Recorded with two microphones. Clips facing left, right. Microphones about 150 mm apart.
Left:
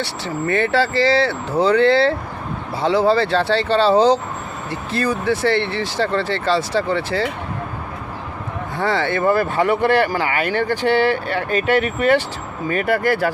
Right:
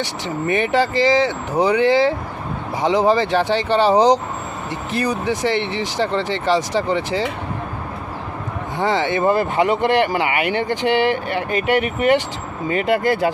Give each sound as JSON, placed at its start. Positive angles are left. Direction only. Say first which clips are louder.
{"t": 0.0, "sound": "speech", "louder": "even", "side_deg": -15}
{"t": 8.8, "sound": "speech", "louder": "right 1 dB", "side_deg": -20}